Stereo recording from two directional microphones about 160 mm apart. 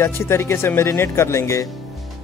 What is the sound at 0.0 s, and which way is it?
Speech, 15° left (ahead or behind).